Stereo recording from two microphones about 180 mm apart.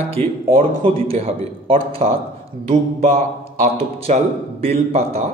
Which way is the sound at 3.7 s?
35° right (ahead or behind).